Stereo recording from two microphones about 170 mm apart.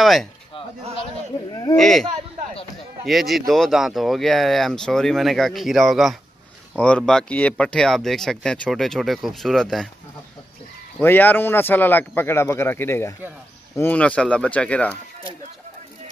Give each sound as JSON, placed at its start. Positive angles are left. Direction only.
{"t": 0.0, "sound": "speech", "side_deg": 0}
{"t": 1.5, "sound": "a sound", "side_deg": 20}
{"t": 1.8, "sound": "speech", "side_deg": 5}
{"t": 3.1, "sound": "speech", "side_deg": 0}
{"t": 11.0, "sound": "speech", "side_deg": 10}